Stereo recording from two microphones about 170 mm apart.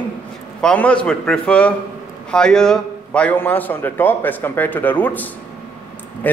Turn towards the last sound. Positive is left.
turn(degrees=10)  # may be behind; listen again after turning